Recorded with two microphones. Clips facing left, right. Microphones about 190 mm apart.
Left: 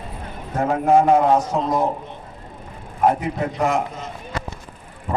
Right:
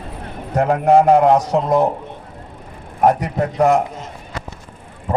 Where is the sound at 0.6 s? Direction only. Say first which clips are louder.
Right 3 dB; 70° right (ahead or behind).